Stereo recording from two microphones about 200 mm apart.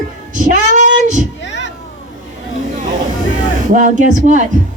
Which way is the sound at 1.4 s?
65° left (ahead or behind).